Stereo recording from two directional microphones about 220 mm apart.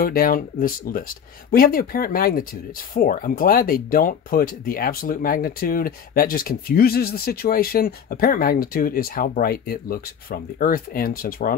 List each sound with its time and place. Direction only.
0.0 s speech: 40° left (ahead or behind)